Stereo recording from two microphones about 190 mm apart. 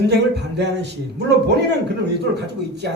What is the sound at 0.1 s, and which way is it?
Speech, 65° right (ahead or behind).